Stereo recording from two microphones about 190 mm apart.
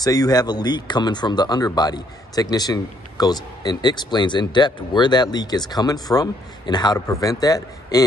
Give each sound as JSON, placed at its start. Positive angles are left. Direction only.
{"t": 0.0, "sound": "speech", "side_deg": 20}